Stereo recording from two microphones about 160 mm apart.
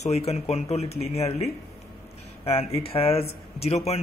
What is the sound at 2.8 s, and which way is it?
Speech, 35° left (ahead or behind).